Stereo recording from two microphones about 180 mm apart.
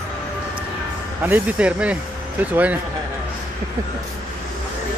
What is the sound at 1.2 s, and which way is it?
Speech, 10° right (ahead or behind).